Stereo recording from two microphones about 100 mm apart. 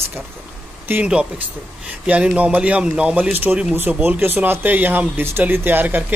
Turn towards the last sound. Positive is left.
turn(degrees=-20)  # may be behind; listen again after turning